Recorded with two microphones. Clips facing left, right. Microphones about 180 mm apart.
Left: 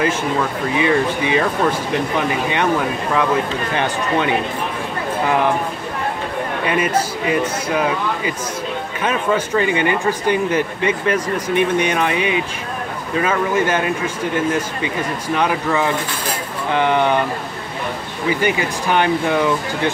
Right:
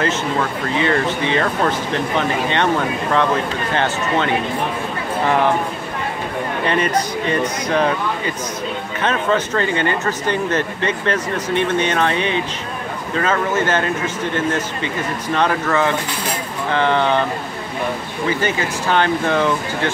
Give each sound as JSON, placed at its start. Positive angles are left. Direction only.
{"t": 0.7, "sound": "speech", "side_deg": 15}
{"t": 3.7, "sound": "speech", "side_deg": 15}
{"t": 6.7, "sound": "speech", "side_deg": 10}
{"t": 9.0, "sound": "speech", "side_deg": 10}
{"t": 18.3, "sound": "speech", "side_deg": 15}